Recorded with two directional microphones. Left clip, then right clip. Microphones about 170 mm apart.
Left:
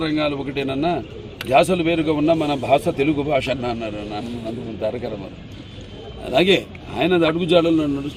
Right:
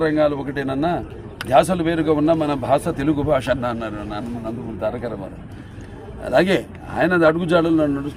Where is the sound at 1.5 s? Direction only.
20° right (ahead or behind).